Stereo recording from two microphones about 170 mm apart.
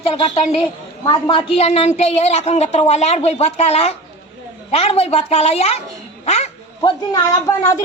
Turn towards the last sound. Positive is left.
turn(degrees=20)  # may be behind; listen again after turning